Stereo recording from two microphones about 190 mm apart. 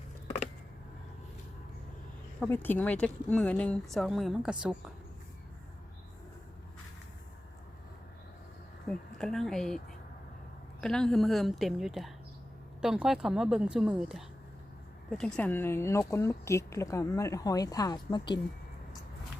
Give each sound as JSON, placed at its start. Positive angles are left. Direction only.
{"t": 2.4, "sound": "speech", "side_deg": 10}
{"t": 8.9, "sound": "a woman's voice", "side_deg": 5}